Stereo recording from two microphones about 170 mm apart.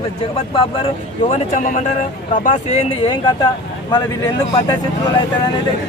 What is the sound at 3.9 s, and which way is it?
Speech, 25° left (ahead or behind).